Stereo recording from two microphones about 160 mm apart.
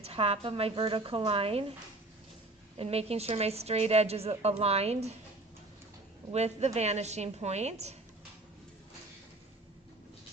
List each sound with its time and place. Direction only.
0.0 s a woman's voice: 40° right (ahead or behind)
2.7 s a woman's voice: 40° right (ahead or behind)
6.3 s a woman's voice: 45° right (ahead or behind)